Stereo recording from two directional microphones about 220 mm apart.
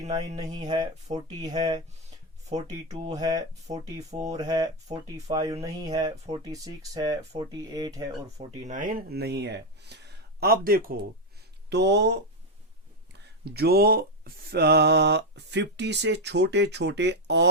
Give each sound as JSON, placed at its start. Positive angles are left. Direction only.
{"t": 0.4, "sound": "speech", "side_deg": -20}
{"t": 2.0, "sound": "a sound", "side_deg": -30}
{"t": 3.2, "sound": "speech", "side_deg": -15}
{"t": 8.4, "sound": "speech", "side_deg": -35}
{"t": 13.4, "sound": "speech", "side_deg": -45}